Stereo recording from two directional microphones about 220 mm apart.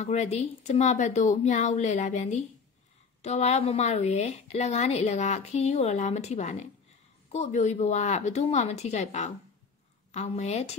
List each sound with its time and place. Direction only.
0.0 s a woman's voice: 30° left (ahead or behind)